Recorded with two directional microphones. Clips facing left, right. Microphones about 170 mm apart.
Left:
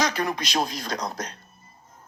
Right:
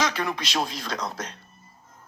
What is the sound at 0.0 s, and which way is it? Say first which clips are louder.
Speech: left 1 dB; 40° left (ahead or behind).